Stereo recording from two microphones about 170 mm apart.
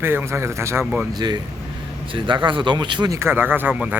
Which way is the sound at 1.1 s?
25° right (ahead or behind).